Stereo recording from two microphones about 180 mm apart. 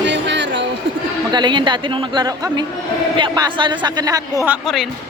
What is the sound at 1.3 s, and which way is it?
Speech, 25° right (ahead or behind).